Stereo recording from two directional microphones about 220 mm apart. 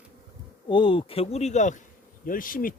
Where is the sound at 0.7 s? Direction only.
25° left (ahead or behind).